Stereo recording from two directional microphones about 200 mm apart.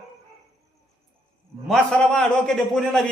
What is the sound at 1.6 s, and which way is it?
A man's voice, centre (ahead or behind).